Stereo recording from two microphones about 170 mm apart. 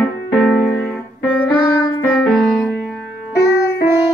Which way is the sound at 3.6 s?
75° left (ahead or behind).